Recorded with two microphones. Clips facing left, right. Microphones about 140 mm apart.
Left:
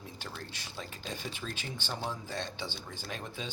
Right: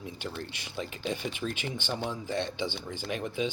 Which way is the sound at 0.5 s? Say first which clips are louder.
Right 6 dB; 15° right (ahead or behind).